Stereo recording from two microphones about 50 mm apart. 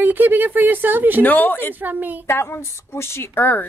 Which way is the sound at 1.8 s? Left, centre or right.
Right.